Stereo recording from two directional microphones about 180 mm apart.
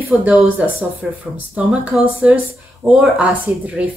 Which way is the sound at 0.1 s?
5° right (ahead or behind).